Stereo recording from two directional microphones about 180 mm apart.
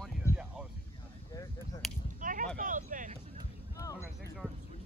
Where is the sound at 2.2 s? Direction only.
45° right (ahead or behind).